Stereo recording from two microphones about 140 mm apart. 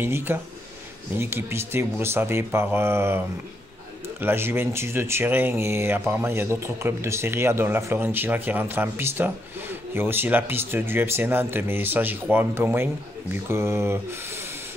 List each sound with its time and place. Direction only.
0.0 s speech: 15° right (ahead or behind)